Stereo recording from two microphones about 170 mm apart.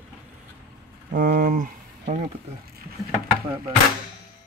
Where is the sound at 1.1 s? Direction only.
55° right (ahead or behind).